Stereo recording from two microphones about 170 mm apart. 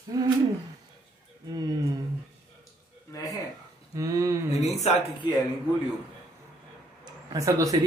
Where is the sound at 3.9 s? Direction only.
20° right (ahead or behind).